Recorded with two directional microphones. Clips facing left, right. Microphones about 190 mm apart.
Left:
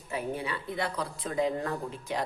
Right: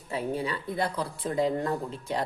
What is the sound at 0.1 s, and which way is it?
A woman's voice, 35° right (ahead or behind).